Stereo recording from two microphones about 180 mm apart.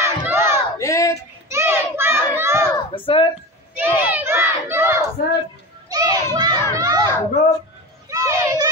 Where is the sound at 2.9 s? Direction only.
30° left (ahead or behind).